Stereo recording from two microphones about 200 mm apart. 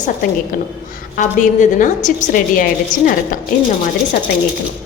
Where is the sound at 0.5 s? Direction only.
40° left (ahead or behind).